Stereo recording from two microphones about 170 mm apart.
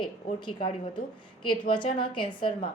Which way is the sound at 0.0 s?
25° left (ahead or behind).